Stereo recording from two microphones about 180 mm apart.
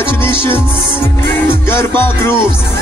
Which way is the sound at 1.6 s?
10° left (ahead or behind).